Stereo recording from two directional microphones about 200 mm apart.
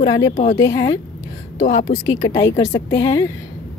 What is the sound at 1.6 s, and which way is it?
Speech, 35° left (ahead or behind).